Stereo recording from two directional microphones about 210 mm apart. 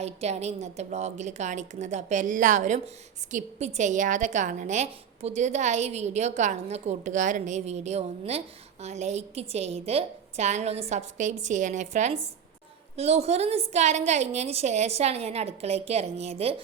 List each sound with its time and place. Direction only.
0.0 s a woman's voice: 30° right (ahead or behind)